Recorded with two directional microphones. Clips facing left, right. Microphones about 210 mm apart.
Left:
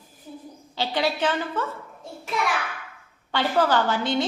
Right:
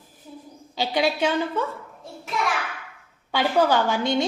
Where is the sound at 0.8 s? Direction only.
10° right (ahead or behind).